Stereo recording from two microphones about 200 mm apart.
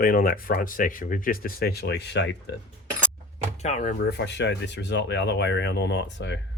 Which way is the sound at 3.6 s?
35° left (ahead or behind).